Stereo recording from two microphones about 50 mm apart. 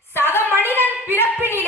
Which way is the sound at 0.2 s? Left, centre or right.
Left.